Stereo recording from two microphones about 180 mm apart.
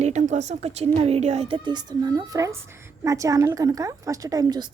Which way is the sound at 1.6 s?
20° right (ahead or behind).